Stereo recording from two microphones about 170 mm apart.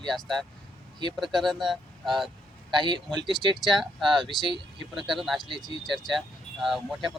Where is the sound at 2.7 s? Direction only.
25° right (ahead or behind).